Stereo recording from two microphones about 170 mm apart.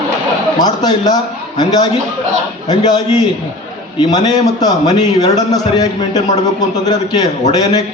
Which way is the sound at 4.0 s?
25° left (ahead or behind).